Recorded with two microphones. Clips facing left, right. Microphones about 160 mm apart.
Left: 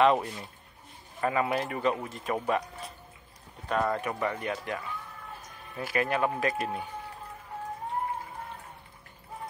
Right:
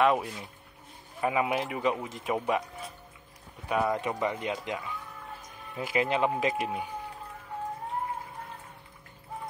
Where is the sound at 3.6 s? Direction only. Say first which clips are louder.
Right 1 dB; 10° right (ahead or behind).